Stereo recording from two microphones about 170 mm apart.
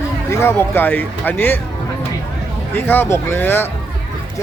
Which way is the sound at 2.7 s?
10° left (ahead or behind).